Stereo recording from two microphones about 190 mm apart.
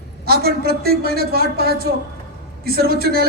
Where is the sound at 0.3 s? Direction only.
55° right (ahead or behind).